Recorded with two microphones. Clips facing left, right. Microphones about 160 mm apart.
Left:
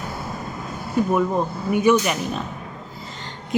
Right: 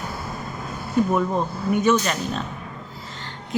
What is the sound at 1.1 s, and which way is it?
Speech, 5° left (ahead or behind).